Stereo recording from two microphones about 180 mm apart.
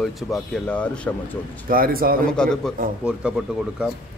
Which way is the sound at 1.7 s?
55° right (ahead or behind).